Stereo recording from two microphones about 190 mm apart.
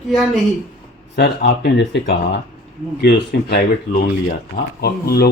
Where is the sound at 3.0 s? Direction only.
60° left (ahead or behind).